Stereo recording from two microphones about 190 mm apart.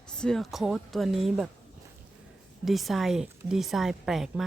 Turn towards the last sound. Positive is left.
turn(degrees=-5)  # may be behind; listen again after turning